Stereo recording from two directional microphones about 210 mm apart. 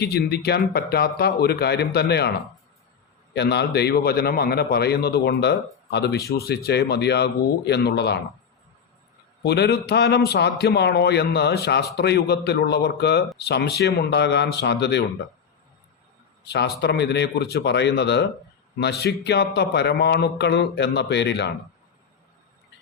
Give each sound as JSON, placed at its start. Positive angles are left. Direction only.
{"t": 0.0, "sound": "a man's voice", "side_deg": 50}
{"t": 3.3, "sound": "a man's voice", "side_deg": 50}
{"t": 9.4, "sound": "a man's voice", "side_deg": 50}
{"t": 16.4, "sound": "a man's voice", "side_deg": 50}